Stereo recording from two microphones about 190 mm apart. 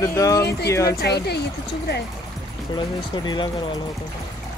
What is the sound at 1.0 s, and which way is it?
Speech, 60° left (ahead or behind).